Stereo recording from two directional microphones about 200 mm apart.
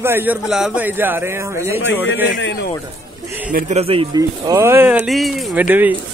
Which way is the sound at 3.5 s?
40° right (ahead or behind).